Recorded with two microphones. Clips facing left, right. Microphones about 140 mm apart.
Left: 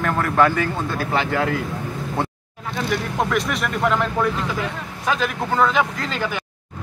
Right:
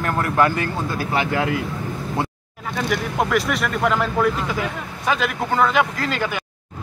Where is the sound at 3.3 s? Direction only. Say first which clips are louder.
Right 1 dB; centre (ahead or behind).